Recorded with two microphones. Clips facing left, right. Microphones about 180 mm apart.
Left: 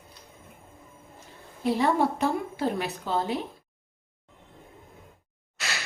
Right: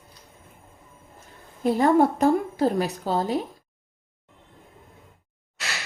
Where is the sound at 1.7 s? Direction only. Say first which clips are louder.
Right 6 dB; 45° right (ahead or behind).